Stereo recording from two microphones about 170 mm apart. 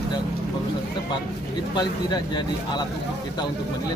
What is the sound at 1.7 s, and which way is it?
Speech, 25° left (ahead or behind).